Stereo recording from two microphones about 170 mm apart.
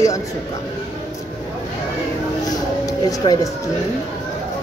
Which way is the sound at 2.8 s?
20° left (ahead or behind).